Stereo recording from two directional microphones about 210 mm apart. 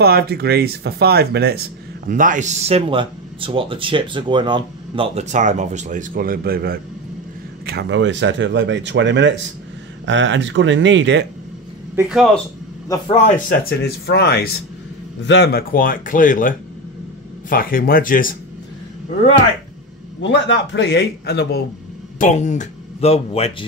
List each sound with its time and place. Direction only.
0.0 s speech: 50° right (ahead or behind)
2.0 s speech: 40° right (ahead or behind); by 11.2 s 60° right (ahead or behind)
13.1 s speech: 30° left (ahead or behind)
13.7 s a man's voice: 50° left (ahead or behind)
20.2 s a man's voice: 55° left (ahead or behind)
22.2 s speech: 35° left (ahead or behind)